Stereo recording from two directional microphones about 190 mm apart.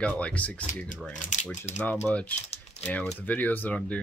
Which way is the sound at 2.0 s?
10° left (ahead or behind).